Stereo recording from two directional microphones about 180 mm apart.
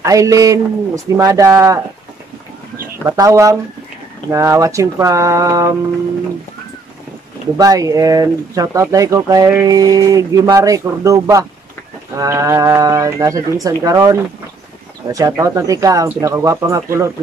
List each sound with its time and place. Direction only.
0.0 s a man's voice: 20° right (ahead or behind)
3.1 s a man's voice: 15° right (ahead or behind)
7.5 s speech: 20° right (ahead or behind)
15.1 s a man's voice: 20° right (ahead or behind)